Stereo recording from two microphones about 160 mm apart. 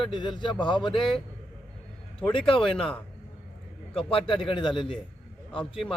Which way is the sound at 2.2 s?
10° left (ahead or behind).